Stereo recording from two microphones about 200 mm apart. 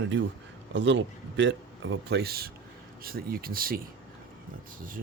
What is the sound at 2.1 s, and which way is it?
Speech, 50° right (ahead or behind).